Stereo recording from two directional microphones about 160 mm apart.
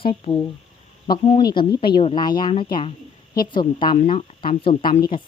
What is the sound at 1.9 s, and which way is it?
Speech, 35° left (ahead or behind).